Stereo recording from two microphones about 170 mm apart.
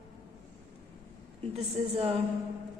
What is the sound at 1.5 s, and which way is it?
Speech, 35° right (ahead or behind).